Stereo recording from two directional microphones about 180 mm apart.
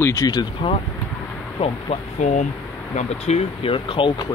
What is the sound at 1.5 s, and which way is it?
Speech, 35° left (ahead or behind).